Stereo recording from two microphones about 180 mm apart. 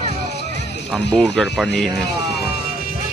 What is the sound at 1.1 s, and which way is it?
Speech, 5° left (ahead or behind).